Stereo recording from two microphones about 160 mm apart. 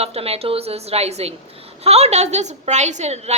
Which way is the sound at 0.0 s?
40° right (ahead or behind).